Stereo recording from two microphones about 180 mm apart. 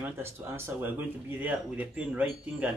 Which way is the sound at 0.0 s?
15° right (ahead or behind).